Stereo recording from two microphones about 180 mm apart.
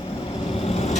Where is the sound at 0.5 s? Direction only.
35° left (ahead or behind).